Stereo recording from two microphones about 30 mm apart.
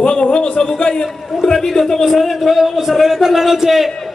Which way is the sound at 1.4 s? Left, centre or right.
Centre.